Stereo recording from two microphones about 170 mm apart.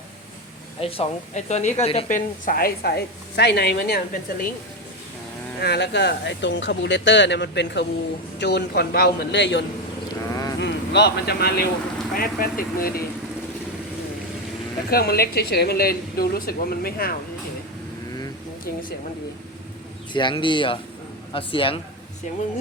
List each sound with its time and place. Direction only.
0.8 s speech: 35° left (ahead or behind)
2.0 s a woman's voice: 50° left (ahead or behind)
5.5 s a man's voice: 75° left (ahead or behind); by 9.6 s 90° left
10.2 s a sound: 20° left (ahead or behind)
10.6 s a woman's voice: 90° left; by 13.1 s 60° left (ahead or behind)
14.8 s a woman's voice: 65° left (ahead or behind)
18.6 s speech: 55° left (ahead or behind)
20.1 s speech: 30° left (ahead or behind)